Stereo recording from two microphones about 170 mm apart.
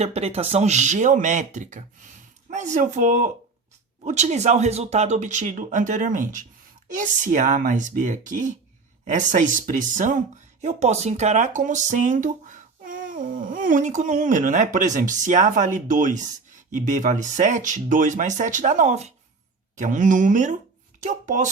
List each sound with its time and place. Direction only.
0.0 s speech: 40° right (ahead or behind)